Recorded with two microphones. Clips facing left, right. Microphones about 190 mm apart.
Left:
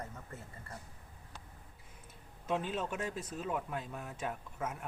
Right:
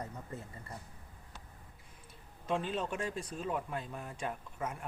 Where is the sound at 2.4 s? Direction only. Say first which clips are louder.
Right 1 dB; 5° left (ahead or behind).